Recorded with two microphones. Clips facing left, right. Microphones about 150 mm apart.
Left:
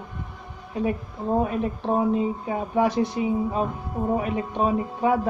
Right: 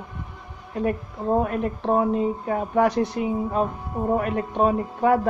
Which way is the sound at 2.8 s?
5° left (ahead or behind).